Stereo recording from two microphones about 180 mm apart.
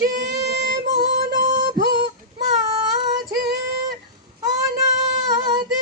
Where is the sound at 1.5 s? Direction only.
40° right (ahead or behind).